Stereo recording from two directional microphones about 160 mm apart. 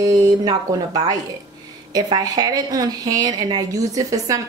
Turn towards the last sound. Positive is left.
turn(degrees=-20)  # may be behind; listen again after turning